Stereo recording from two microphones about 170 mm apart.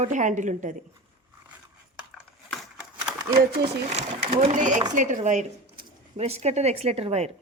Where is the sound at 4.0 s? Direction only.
45° right (ahead or behind).